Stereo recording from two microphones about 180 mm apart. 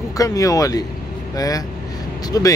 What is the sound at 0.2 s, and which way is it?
Speech, 20° left (ahead or behind).